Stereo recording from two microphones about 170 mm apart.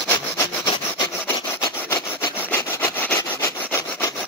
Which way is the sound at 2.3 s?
10° left (ahead or behind).